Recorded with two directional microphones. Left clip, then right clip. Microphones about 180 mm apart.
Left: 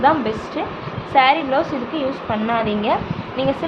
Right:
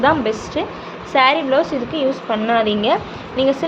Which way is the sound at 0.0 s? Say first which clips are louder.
Right 1 dB; 30° right (ahead or behind).